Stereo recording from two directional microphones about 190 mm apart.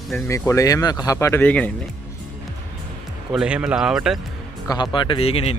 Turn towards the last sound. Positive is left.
turn(degrees=30)  # may be behind; listen again after turning